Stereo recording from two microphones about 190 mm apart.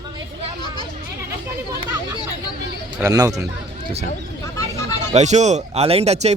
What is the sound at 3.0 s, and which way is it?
Speech, 20° right (ahead or behind).